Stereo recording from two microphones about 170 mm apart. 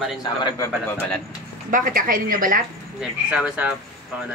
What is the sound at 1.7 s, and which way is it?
Speech, 50° right (ahead or behind).